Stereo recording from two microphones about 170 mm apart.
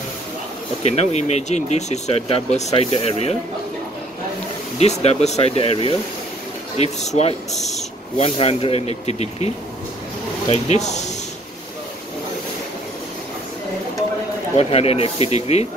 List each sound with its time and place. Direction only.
0.8 s speech: 40° left (ahead or behind)
4.7 s speech: 40° left (ahead or behind)
10.5 s speech: 40° left (ahead or behind)
14.6 s speech: 35° left (ahead or behind)